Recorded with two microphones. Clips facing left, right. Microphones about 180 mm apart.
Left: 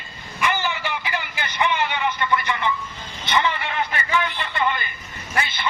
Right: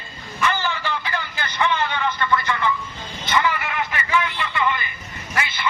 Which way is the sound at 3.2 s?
20° left (ahead or behind).